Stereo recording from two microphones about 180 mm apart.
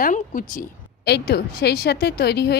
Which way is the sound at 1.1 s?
65° left (ahead or behind).